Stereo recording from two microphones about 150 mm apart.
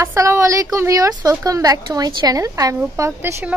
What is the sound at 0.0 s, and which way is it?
A woman's voice, 20° right (ahead or behind).